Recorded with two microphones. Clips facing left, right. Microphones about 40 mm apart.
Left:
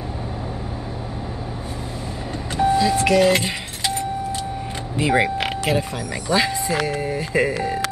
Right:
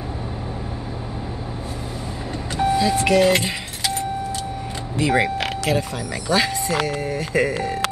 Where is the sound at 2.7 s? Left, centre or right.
Centre.